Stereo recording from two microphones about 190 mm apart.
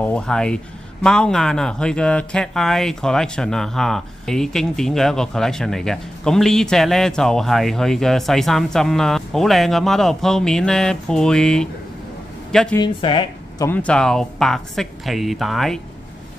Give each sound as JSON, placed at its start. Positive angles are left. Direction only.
{"t": 0.0, "sound": "speech", "side_deg": 5}
{"t": 12.7, "sound": "speech", "side_deg": 25}
{"t": 13.7, "sound": "speech", "side_deg": 5}